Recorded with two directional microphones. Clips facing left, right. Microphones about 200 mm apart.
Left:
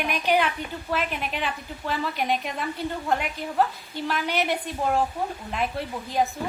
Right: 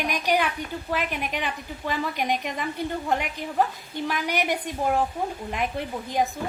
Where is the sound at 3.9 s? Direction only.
15° right (ahead or behind).